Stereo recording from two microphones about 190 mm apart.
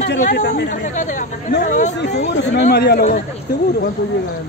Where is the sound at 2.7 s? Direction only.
55° left (ahead or behind).